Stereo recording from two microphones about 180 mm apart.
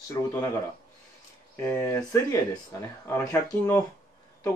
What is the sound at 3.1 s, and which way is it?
Speech, 15° left (ahead or behind).